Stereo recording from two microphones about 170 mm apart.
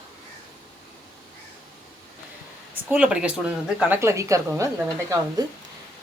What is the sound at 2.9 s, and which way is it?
Speech, 5° right (ahead or behind).